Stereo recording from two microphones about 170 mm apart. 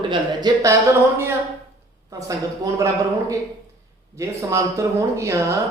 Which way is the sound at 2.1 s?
20° right (ahead or behind).